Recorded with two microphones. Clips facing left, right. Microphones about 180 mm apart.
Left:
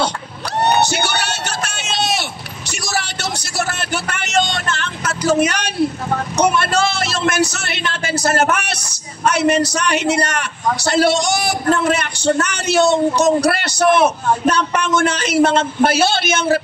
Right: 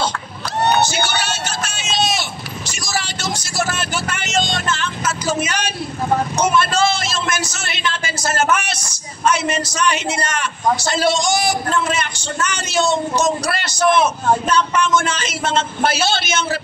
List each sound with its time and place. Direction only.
0.7 s a sound: 65° left (ahead or behind)
3.5 s music: 60° left (ahead or behind)
6.3 s a man's voice: 65° left (ahead or behind)